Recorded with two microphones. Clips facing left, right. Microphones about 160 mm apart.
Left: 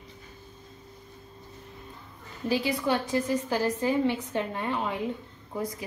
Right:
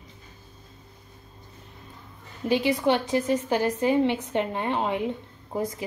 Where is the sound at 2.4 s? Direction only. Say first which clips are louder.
Right 4 dB; 20° right (ahead or behind).